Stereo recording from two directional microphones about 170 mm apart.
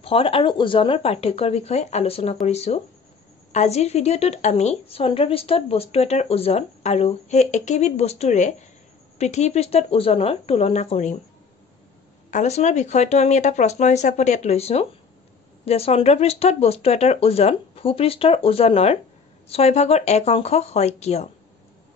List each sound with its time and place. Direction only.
0.0 s a woman's voice: 35° left (ahead or behind)
12.3 s a woman's voice: 40° left (ahead or behind)